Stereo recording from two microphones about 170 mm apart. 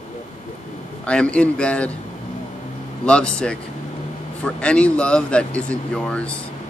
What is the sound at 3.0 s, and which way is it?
Speech, 5° left (ahead or behind).